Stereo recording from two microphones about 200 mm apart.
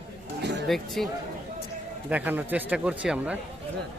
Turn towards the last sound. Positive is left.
turn(degrees=-5)  # may be behind; listen again after turning